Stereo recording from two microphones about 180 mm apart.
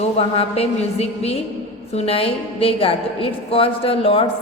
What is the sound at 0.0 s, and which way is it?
A woman's voice, 35° left (ahead or behind).